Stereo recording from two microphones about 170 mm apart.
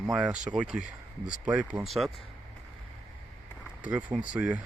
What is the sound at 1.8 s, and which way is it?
Speech, centre (ahead or behind).